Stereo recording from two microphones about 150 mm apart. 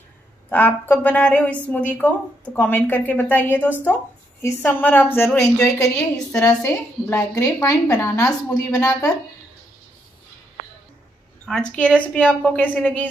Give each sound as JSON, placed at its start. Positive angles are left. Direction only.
{"t": 0.5, "sound": "a woman's voice", "side_deg": 15}
{"t": 11.4, "sound": "a woman's voice", "side_deg": 5}